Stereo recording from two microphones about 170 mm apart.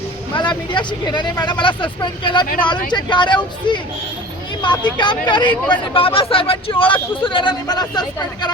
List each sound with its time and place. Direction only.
0.3 s speech: 25° left (ahead or behind)